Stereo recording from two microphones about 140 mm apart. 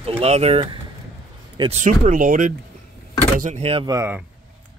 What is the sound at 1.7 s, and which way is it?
Speech, 60° right (ahead or behind).